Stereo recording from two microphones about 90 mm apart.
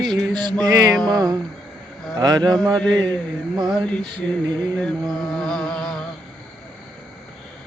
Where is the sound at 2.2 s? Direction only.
50° right (ahead or behind).